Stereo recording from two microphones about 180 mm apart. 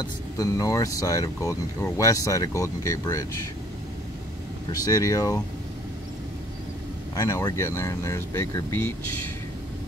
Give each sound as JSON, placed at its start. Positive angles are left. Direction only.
{"t": 0.0, "sound": "speech", "side_deg": 20}
{"t": 4.6, "sound": "speech", "side_deg": 20}
{"t": 7.2, "sound": "speech", "side_deg": 20}